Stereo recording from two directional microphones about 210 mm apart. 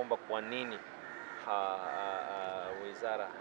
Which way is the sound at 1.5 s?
20° right (ahead or behind).